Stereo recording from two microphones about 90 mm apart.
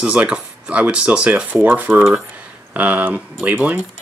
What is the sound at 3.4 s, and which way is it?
Speech, 20° right (ahead or behind).